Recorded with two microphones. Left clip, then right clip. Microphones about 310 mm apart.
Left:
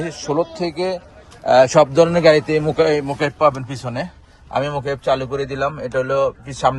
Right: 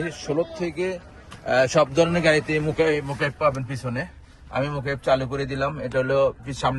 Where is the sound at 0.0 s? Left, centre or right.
Centre.